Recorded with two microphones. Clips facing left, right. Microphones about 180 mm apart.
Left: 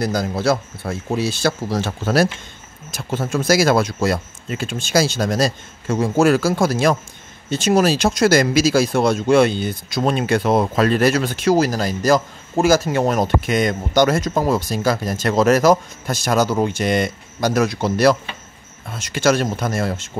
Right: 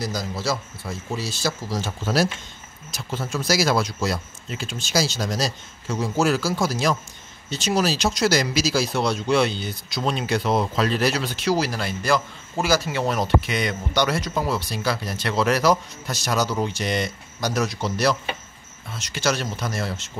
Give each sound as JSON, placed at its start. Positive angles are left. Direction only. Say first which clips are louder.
{"t": 0.0, "sound": "speech", "louder": "left 8 dB", "side_deg": 60}